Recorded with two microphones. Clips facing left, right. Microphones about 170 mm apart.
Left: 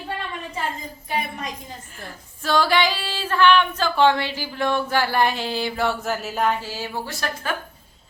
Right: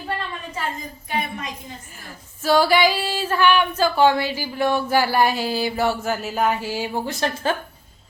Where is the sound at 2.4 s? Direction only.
10° right (ahead or behind).